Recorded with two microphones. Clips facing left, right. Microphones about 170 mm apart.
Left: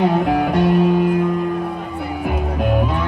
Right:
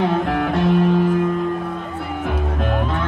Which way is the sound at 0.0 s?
5° left (ahead or behind).